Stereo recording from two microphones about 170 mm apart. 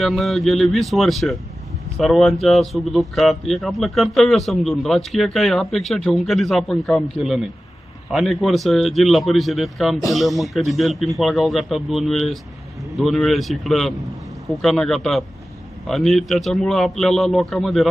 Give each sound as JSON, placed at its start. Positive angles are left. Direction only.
{"t": 0.0, "sound": "speech", "side_deg": 0}